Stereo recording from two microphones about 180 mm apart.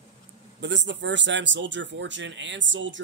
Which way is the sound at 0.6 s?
80° right.